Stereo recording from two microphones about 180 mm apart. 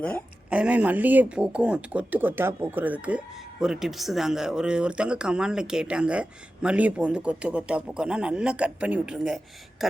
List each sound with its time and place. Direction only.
0.5 s speech: 5° right (ahead or behind)